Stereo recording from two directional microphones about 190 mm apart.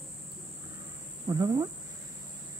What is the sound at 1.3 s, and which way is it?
Speech, 20° right (ahead or behind).